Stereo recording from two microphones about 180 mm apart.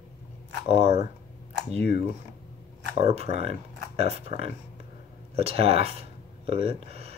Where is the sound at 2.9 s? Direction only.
35° right (ahead or behind).